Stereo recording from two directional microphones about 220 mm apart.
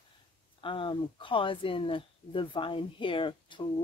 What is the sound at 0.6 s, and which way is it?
Speech, 25° left (ahead or behind).